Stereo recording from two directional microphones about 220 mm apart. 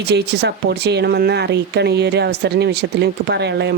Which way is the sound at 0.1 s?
50° right (ahead or behind).